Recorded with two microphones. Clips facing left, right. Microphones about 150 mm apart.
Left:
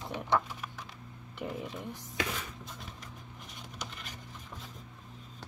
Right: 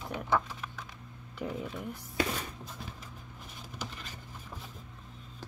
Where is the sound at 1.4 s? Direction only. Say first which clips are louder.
Right 1 dB; 5° left (ahead or behind).